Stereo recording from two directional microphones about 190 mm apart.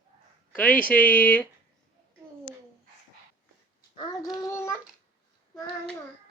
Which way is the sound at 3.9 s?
20° left (ahead or behind).